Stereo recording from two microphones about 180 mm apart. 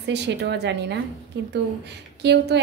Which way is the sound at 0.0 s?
75° right (ahead or behind).